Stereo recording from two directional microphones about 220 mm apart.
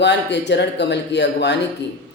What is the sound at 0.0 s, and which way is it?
Speech, 50° left (ahead or behind).